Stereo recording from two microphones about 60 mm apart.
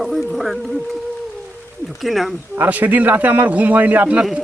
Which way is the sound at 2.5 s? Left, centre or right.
Right.